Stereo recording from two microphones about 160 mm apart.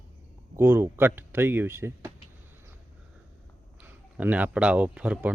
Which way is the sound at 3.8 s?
10° right (ahead or behind).